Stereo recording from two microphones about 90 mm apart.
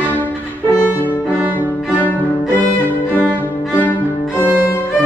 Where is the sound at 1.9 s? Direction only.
20° left (ahead or behind).